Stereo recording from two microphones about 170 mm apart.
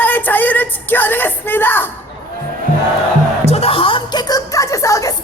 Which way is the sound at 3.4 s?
35° left (ahead or behind).